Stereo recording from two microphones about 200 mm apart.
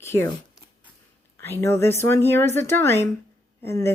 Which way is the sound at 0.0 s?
10° left (ahead or behind).